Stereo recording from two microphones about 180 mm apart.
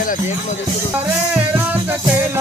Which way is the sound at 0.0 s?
50° left (ahead or behind).